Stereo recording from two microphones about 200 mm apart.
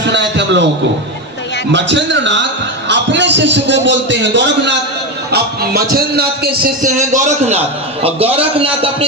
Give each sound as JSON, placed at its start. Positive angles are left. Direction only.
{"t": 0.0, "sound": "a sound", "side_deg": -60}
{"t": 1.7, "sound": "a man's voice", "side_deg": -65}
{"t": 5.3, "sound": "speech", "side_deg": -50}
{"t": 6.9, "sound": "a man's voice", "side_deg": -35}